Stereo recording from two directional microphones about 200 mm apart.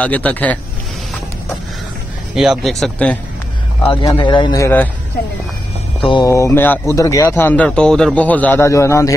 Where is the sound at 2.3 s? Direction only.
Centre (ahead or behind).